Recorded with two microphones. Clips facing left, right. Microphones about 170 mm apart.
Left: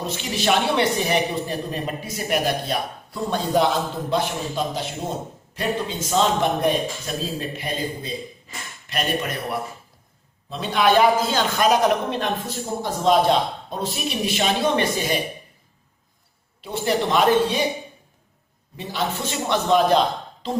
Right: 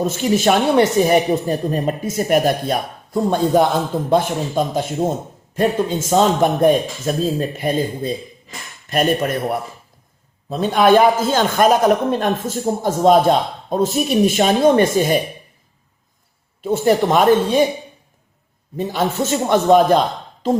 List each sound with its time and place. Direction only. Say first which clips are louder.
0.0 s a man's voice: right 8 dB; 45° right (ahead or behind)
16.6 s a man's voice: right 7 dB; 45° right (ahead or behind)
18.8 s a man's voice: right 7 dB; 50° right (ahead or behind)